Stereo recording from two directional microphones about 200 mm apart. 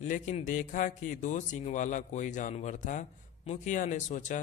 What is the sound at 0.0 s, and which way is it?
Speech, 40° left (ahead or behind).